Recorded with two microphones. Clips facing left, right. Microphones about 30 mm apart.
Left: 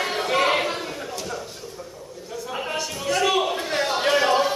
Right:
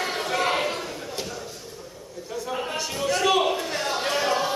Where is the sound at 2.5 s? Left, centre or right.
Centre.